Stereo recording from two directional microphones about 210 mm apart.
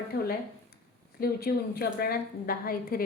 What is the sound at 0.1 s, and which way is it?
A woman's voice, 45° left (ahead or behind).